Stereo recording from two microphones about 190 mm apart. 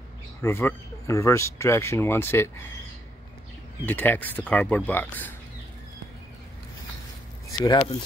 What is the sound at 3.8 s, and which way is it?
Speech, 10° left (ahead or behind).